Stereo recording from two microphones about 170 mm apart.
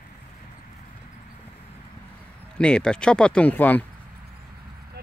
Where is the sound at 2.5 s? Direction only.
5° left (ahead or behind).